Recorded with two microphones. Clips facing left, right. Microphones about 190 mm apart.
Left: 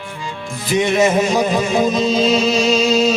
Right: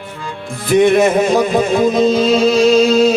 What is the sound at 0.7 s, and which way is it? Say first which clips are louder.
Music: right 5 dB; 55° right (ahead or behind).